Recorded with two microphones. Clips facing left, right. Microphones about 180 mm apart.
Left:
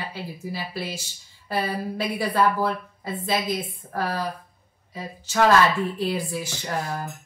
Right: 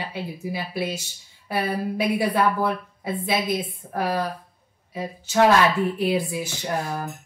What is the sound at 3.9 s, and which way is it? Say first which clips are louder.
A woman's voice: right 2 dB; 15° right (ahead or behind).